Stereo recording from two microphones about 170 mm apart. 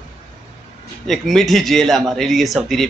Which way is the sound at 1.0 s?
Centre (ahead or behind).